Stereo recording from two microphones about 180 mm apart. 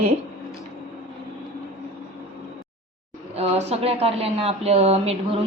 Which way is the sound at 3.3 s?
35° right (ahead or behind).